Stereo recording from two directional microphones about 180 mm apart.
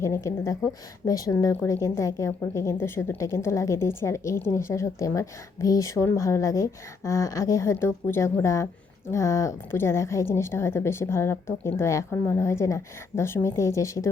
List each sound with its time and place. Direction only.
0.0 s a woman's voice: 15° left (ahead or behind)